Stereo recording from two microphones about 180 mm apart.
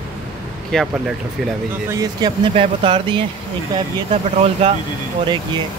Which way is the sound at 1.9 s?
20° right (ahead or behind).